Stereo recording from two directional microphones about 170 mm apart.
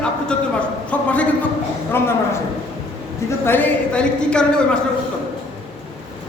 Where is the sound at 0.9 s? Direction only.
10° left (ahead or behind).